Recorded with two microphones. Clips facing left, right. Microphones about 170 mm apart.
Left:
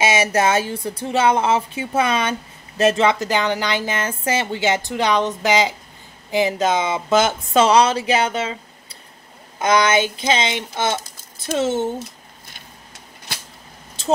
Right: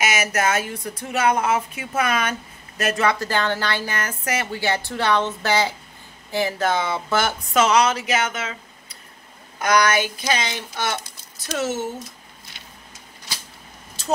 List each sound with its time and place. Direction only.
0.0 s a woman's voice: 25° left (ahead or behind)